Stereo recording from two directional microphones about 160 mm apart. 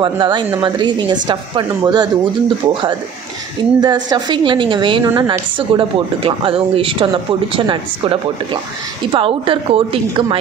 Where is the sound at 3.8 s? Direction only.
25° right (ahead or behind).